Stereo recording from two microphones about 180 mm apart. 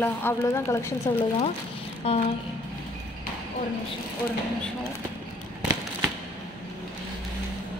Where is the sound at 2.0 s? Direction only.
30° left (ahead or behind).